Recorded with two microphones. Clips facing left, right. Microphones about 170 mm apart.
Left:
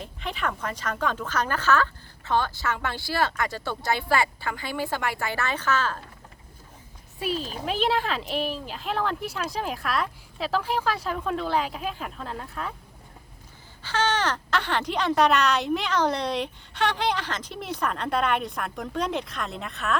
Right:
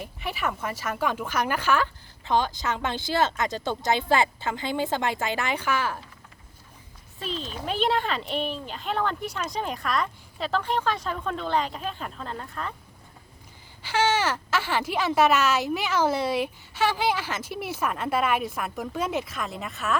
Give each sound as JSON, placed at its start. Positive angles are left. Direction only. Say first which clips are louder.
{"t": 0.0, "sound": "speech", "louder": "even", "side_deg": -5}
{"t": 7.2, "sound": "speech", "louder": "left 4 dB", "side_deg": 10}
{"t": 13.8, "sound": "speech", "louder": "right 1 dB", "side_deg": -10}